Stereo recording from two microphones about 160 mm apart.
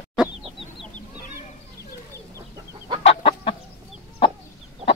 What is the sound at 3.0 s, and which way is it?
Chicken, 35° left (ahead or behind).